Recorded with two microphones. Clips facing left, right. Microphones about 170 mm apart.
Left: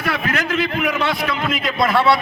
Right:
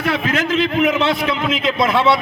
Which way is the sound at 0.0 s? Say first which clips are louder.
Right 3 dB; 20° right (ahead or behind).